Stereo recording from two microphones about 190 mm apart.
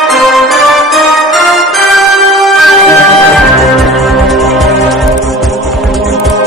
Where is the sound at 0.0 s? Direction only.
Centre (ahead or behind).